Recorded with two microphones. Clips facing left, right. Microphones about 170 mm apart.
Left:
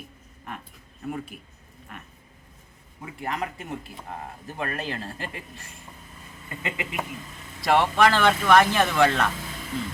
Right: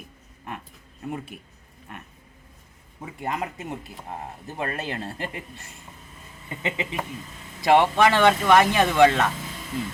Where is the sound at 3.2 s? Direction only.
20° right (ahead or behind).